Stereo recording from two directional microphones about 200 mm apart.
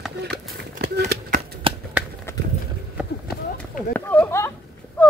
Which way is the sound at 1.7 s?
25° right (ahead or behind).